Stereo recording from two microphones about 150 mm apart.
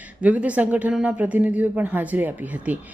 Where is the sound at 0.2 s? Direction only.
10° right (ahead or behind).